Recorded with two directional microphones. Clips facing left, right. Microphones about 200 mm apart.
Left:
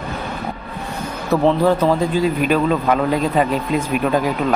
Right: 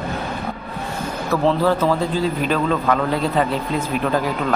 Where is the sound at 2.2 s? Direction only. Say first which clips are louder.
Left 3 dB; 15° left (ahead or behind).